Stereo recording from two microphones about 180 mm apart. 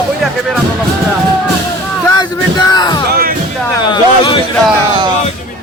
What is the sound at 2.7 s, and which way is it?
Speech, 25° left (ahead or behind).